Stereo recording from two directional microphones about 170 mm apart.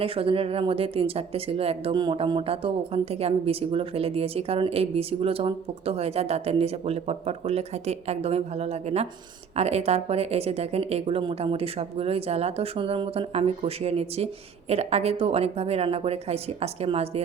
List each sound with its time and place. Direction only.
0.0 s speech: 35° right (ahead or behind)